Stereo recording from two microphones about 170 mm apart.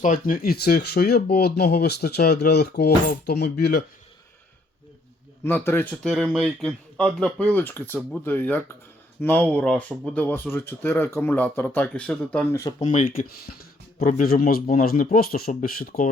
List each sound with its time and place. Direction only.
0.0 s speech: 50° left (ahead or behind); by 3.8 s 70° left (ahead or behind)
5.4 s speech: 10° left (ahead or behind)
12.8 s a man's voice: 45° left (ahead or behind)